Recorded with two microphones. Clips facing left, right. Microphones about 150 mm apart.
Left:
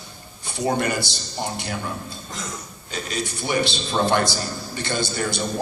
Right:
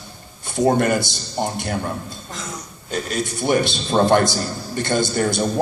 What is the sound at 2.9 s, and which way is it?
A man's voice, 50° right (ahead or behind).